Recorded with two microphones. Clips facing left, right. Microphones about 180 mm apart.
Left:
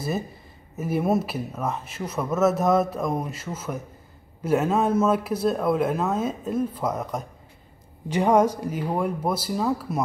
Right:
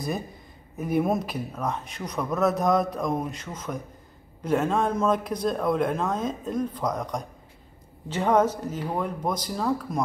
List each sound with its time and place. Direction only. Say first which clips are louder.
0.7 s speech: left 1 dB; 5° left (ahead or behind)